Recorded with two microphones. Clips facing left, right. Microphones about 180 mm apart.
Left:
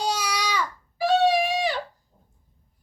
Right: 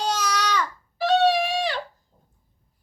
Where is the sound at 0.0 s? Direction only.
10° left (ahead or behind).